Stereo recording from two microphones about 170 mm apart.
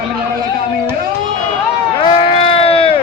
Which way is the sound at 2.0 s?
30° left (ahead or behind).